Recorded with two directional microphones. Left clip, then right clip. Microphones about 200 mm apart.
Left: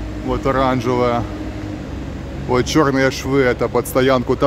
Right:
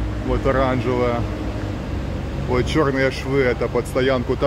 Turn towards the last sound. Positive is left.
turn(degrees=25)  # may be behind; listen again after turning